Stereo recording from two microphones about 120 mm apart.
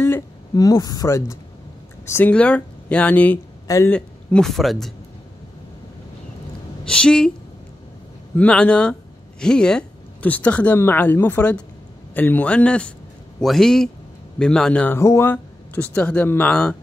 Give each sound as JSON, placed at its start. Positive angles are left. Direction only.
{"t": 0.6, "sound": "speech", "side_deg": 30}
{"t": 3.6, "sound": "speech", "side_deg": 25}
{"t": 3.9, "sound": "speech", "side_deg": 5}
{"t": 6.8, "sound": "a woman's voice", "side_deg": 5}
{"t": 8.4, "sound": "a man's voice", "side_deg": 10}
{"t": 15.0, "sound": "speech", "side_deg": 20}